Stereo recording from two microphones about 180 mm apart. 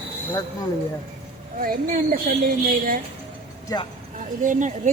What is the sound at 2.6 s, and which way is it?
Speech, 50° right (ahead or behind).